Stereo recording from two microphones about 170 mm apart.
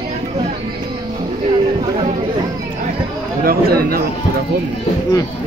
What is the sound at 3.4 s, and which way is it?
Speech, 60° right (ahead or behind).